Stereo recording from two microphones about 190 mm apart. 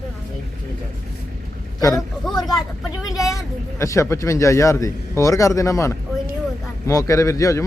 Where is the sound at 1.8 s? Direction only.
15° left (ahead or behind).